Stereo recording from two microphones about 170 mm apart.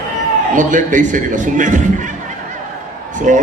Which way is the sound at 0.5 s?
50° right (ahead or behind).